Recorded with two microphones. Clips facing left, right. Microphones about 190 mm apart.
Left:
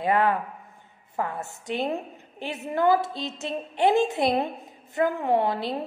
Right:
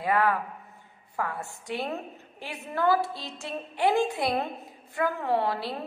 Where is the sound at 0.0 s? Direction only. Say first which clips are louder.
Left 2 dB; 25° left (ahead or behind).